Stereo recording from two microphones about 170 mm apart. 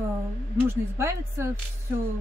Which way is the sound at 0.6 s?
15° right (ahead or behind).